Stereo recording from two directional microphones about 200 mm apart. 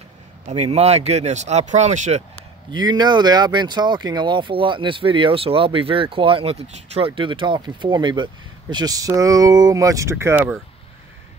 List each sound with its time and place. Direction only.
0.5 s speech: 35° right (ahead or behind)
2.7 s speech: 20° right (ahead or behind)